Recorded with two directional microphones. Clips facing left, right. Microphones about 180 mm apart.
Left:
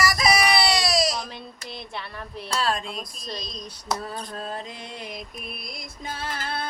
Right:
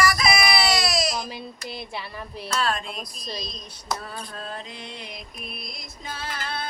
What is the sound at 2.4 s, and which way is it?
Speech, 35° left (ahead or behind).